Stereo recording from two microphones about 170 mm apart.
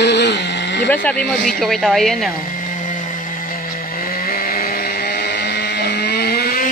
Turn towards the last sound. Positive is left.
turn(degrees=65)  # may be behind; listen again after turning